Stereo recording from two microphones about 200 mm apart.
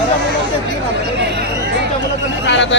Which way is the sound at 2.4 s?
65° left (ahead or behind).